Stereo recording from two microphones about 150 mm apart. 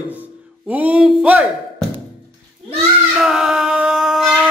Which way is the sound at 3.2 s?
5° right (ahead or behind).